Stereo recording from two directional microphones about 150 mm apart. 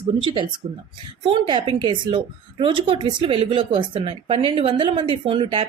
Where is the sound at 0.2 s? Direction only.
35° right (ahead or behind).